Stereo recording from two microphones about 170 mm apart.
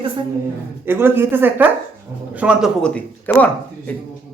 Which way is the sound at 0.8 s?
15° right (ahead or behind).